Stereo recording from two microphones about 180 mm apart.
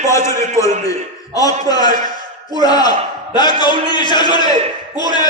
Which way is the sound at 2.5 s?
20° left (ahead or behind).